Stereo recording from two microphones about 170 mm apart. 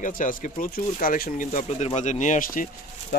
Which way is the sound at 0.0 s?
50° left (ahead or behind).